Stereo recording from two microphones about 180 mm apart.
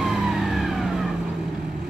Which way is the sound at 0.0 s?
Centre (ahead or behind).